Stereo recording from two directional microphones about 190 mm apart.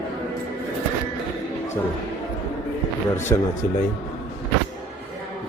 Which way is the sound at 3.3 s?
15° left (ahead or behind).